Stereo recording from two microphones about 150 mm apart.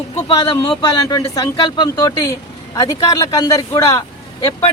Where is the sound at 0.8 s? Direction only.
25° left (ahead or behind).